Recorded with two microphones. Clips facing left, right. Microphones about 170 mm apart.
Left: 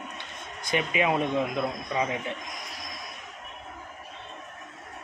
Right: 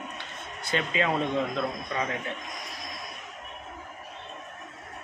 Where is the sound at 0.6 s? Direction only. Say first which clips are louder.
Left 2 dB; 15° left (ahead or behind).